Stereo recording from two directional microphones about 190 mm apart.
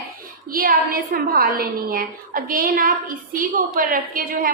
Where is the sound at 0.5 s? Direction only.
50° right (ahead or behind).